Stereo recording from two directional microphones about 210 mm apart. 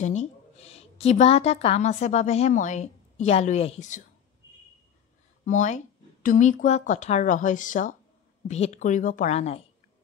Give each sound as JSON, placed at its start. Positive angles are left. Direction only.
{"t": 0.0, "sound": "a woman's voice", "side_deg": 35}
{"t": 5.4, "sound": "speech", "side_deg": 35}